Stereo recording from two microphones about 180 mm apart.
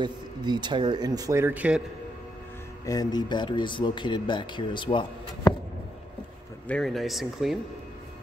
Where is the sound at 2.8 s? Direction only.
20° left (ahead or behind).